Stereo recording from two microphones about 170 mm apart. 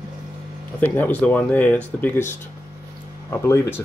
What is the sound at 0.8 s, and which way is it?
Speech, 10° left (ahead or behind).